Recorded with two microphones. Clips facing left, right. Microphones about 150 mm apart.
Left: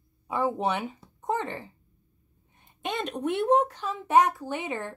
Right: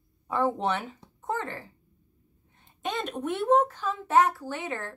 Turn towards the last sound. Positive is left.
turn(degrees=15)  # may be behind; listen again after turning